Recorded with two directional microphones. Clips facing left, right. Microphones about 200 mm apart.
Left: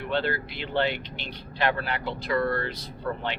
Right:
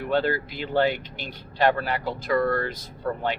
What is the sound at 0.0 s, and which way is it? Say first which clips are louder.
Speech: right 4 dB; 45° right (ahead or behind).